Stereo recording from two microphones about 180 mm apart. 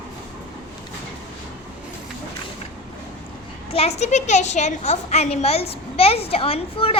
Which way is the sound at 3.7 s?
35° left (ahead or behind).